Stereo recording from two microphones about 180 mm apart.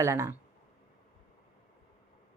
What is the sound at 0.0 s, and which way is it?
Speech, 15° right (ahead or behind).